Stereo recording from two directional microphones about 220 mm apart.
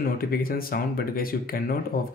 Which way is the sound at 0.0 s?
40° left (ahead or behind).